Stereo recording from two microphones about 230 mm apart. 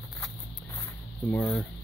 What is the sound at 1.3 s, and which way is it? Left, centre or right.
Speech, centre.